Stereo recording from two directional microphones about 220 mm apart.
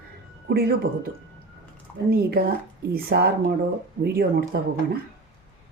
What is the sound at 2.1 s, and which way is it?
Speech, 45° right (ahead or behind).